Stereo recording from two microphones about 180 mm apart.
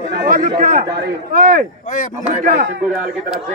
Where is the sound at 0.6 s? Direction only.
50° right (ahead or behind).